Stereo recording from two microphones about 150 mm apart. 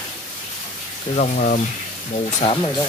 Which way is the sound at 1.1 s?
55° left (ahead or behind).